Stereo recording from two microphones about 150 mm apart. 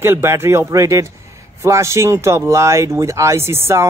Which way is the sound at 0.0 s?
15° right (ahead or behind).